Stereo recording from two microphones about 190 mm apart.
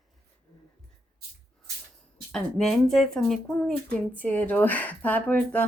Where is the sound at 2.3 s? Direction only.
Centre (ahead or behind).